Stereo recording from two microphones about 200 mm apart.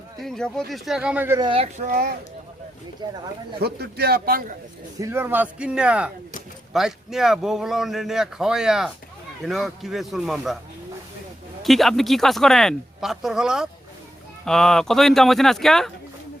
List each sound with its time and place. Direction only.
0.2 s a man's voice: 5° left (ahead or behind)
1.4 s speech: 25° right (ahead or behind)
1.9 s a man's voice: 45° right (ahead or behind)
3.6 s a man's voice: 50° right (ahead or behind)
4.9 s a man's voice: 15° right (ahead or behind)
11.6 s a man's voice: centre (ahead or behind)